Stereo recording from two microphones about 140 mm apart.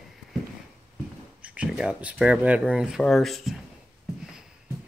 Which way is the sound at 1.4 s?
10° right (ahead or behind).